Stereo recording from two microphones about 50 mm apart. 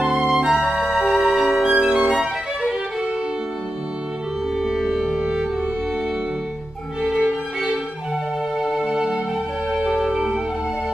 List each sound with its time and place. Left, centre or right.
0.0 s music: centre
0.7 s music: centre
2.0 s violin: centre
4.6 s music: centre
7.0 s music: centre
8.5 s music: centre
9.8 s music: centre